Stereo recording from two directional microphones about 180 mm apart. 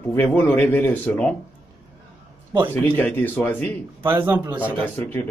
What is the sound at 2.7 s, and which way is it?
Speech, 10° left (ahead or behind).